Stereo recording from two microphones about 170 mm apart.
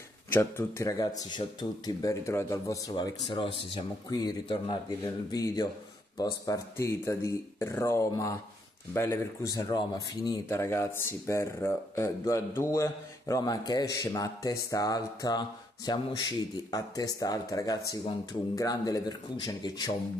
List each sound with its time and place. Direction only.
0.3 s speech: 15° left (ahead or behind)